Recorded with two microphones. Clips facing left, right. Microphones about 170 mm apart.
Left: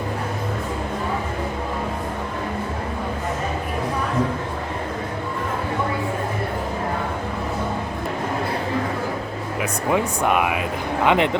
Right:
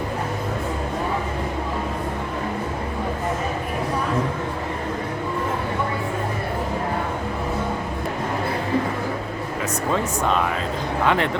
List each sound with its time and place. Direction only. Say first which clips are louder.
9.9 s speech: left 3 dB; 15° left (ahead or behind)